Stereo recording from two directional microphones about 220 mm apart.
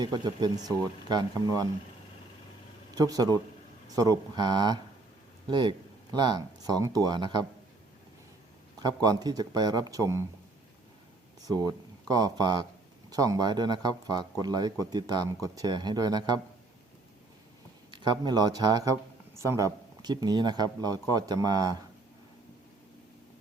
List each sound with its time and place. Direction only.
0.0 s speech: 20° right (ahead or behind)
2.9 s speech: 15° right (ahead or behind)
8.8 s speech: 15° right (ahead or behind)
11.4 s speech: 15° right (ahead or behind)
17.9 s speech: 20° right (ahead or behind)